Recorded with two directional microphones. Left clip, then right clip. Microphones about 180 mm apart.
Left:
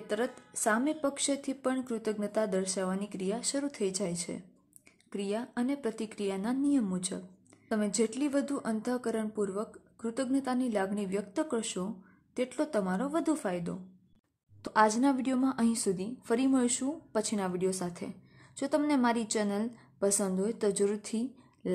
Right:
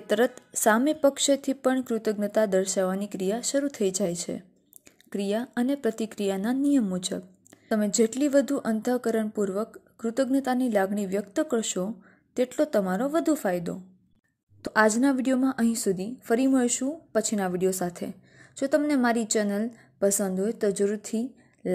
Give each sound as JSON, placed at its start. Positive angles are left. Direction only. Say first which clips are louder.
{"t": 0.0, "sound": "a woman's voice", "louder": "right 9 dB", "side_deg": -35}